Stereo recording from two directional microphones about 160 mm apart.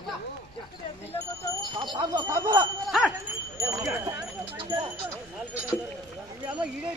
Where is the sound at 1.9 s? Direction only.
25° right (ahead or behind).